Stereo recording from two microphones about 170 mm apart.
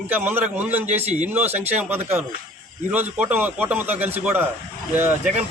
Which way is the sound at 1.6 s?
10° right (ahead or behind).